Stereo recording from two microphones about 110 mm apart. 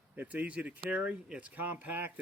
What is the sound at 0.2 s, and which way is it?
Speech, 15° right (ahead or behind).